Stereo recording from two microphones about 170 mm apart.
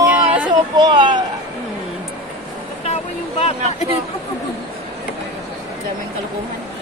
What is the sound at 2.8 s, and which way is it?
Vehicle, 35° left (ahead or behind).